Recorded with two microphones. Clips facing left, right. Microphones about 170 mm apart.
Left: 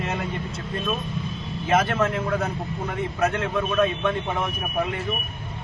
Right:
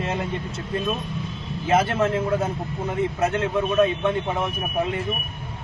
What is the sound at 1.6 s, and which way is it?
A man's voice, 30° right (ahead or behind).